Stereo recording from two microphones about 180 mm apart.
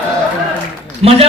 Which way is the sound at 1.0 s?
35° right (ahead or behind).